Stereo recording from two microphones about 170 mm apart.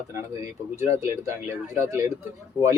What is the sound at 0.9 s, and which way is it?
Speech, 15° right (ahead or behind).